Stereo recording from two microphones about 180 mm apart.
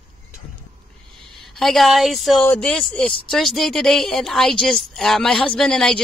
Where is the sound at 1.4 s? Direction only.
Centre (ahead or behind).